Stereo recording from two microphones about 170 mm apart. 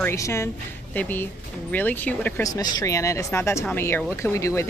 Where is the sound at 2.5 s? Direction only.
20° left (ahead or behind).